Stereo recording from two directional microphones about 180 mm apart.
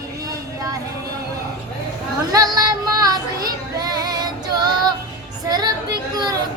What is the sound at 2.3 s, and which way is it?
Music, 20° right (ahead or behind).